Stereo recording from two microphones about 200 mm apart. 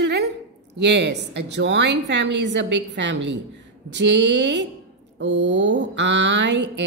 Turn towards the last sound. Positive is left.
turn(degrees=-60)  # may be behind; listen again after turning